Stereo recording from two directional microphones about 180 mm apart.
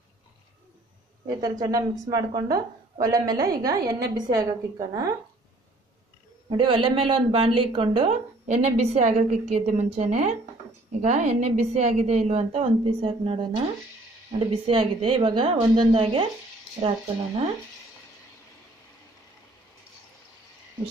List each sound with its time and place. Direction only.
1.3 s a woman's voice: 20° right (ahead or behind)
6.5 s a woman's voice: 30° right (ahead or behind)
14.7 s a woman's voice: 30° right (ahead or behind)